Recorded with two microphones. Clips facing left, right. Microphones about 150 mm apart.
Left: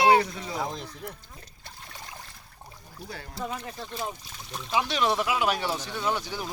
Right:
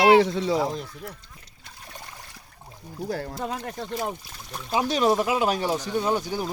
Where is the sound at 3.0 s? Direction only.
55° right (ahead or behind).